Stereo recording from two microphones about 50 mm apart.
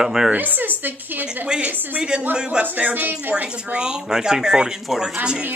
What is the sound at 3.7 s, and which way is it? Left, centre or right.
Speech, centre.